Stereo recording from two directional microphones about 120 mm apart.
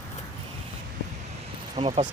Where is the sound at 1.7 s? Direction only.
45° right (ahead or behind).